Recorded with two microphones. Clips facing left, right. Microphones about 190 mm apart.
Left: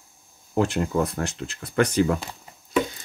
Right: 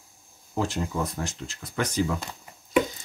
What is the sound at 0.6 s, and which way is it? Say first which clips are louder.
Speech: left 5 dB; 60° left (ahead or behind).